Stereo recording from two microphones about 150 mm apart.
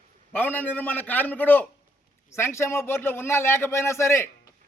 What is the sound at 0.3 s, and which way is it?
A man's voice, 10° left (ahead or behind).